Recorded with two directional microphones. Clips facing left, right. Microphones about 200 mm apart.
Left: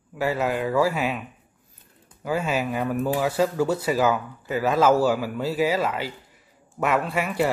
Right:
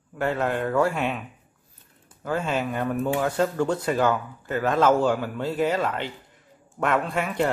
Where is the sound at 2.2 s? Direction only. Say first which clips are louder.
Left 1 dB; 5° left (ahead or behind).